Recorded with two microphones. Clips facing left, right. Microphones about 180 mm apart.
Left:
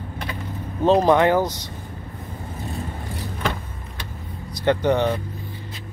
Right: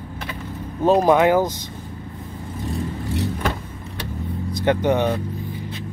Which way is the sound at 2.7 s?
75° right (ahead or behind).